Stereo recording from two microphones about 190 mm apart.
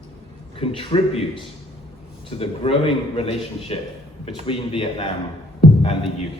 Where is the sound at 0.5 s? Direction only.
25° left (ahead or behind).